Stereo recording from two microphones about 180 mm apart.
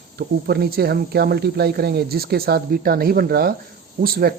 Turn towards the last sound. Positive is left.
turn(degrees=-55)  # may be behind; listen again after turning